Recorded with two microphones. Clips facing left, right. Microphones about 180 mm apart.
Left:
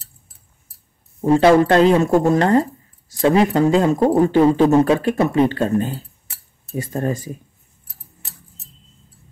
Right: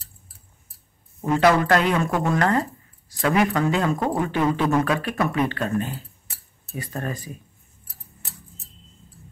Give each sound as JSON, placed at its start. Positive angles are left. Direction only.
{"t": 1.2, "sound": "speech", "side_deg": 30}